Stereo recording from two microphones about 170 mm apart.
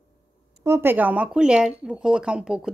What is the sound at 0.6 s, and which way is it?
Speech, 15° right (ahead or behind).